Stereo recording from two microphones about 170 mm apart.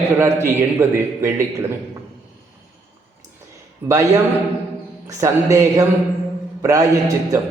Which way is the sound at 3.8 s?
20° right (ahead or behind).